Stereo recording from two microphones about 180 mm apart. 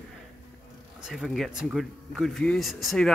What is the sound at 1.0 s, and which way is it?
Speech, centre (ahead or behind).